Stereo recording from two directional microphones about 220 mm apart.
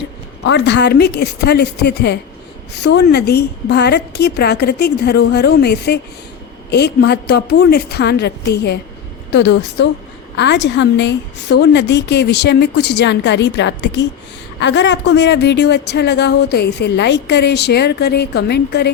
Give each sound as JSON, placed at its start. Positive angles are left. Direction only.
{"t": 0.4, "sound": "speech", "side_deg": 50}